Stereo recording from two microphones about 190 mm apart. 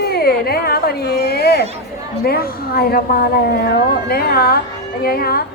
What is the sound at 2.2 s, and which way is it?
A woman's voice, 55° left (ahead or behind).